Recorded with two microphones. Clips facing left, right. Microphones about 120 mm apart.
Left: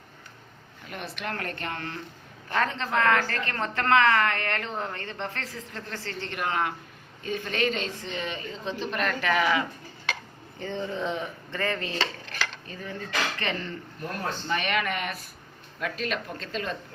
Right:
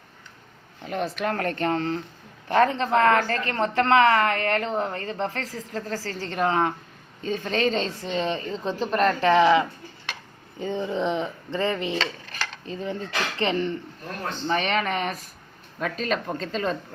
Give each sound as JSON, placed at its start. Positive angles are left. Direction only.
{"t": 0.9, "sound": "a woman's voice", "side_deg": -45}